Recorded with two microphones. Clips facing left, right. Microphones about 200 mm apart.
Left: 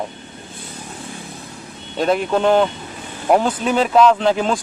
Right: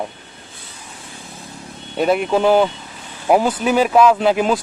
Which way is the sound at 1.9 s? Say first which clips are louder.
Right 1 dB; 5° right (ahead or behind).